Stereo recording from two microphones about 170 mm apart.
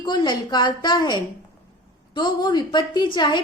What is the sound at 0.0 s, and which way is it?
A woman's voice, 25° left (ahead or behind).